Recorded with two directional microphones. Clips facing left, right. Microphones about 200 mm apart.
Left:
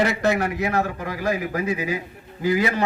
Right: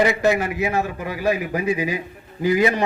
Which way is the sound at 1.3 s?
15° right (ahead or behind).